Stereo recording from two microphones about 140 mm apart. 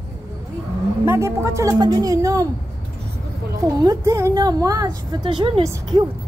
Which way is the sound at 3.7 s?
25° right (ahead or behind).